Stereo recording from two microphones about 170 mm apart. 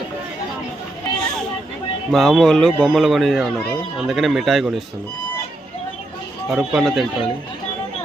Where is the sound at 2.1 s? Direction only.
Centre (ahead or behind).